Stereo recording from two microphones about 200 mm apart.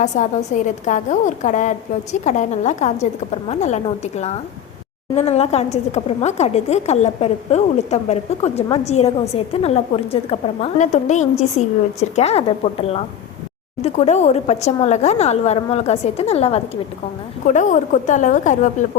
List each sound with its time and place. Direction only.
0.0 s speech: 35° left (ahead or behind)